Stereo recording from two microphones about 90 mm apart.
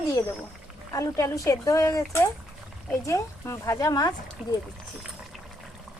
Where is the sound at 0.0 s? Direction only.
35° left (ahead or behind).